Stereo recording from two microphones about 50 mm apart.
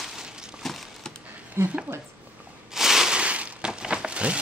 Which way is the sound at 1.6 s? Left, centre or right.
Right.